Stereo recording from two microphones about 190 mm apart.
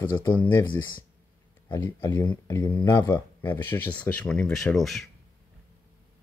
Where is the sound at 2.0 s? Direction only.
20° left (ahead or behind); by 5.1 s centre (ahead or behind).